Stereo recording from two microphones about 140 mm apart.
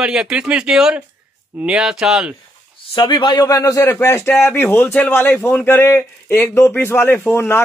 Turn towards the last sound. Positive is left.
turn(degrees=15)  # may be behind; listen again after turning